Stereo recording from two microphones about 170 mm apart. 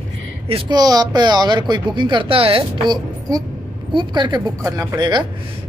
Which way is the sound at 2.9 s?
20° right (ahead or behind).